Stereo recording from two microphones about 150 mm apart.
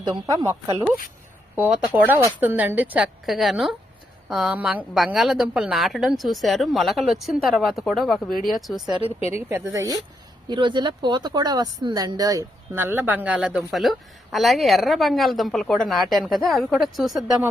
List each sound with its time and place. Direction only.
0.0 s speech: 25° right (ahead or behind)
1.5 s a woman's voice: 10° right (ahead or behind)
9.3 s a woman's voice: 15° right (ahead or behind)